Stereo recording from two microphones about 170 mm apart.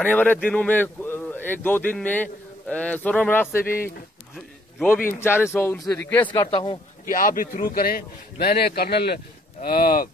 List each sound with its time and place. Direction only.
0.0 s speech: 10° left (ahead or behind)
5.2 s speech: 15° left (ahead or behind)
6.3 s a man's voice: 30° left (ahead or behind)
7.1 s a man's voice: 50° left (ahead or behind)